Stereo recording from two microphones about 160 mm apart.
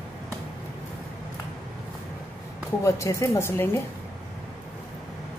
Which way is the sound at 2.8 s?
20° left (ahead or behind).